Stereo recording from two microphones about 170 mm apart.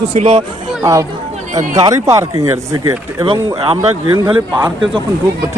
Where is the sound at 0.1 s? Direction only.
35° right (ahead or behind).